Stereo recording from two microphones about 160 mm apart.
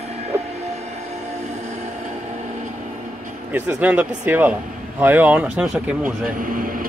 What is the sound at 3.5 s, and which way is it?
Speech, 10° right (ahead or behind).